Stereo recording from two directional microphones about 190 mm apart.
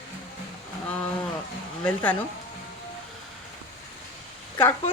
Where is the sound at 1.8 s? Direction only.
10° left (ahead or behind).